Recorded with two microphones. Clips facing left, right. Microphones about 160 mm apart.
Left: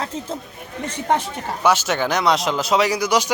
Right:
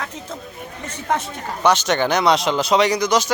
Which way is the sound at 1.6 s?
5° left (ahead or behind).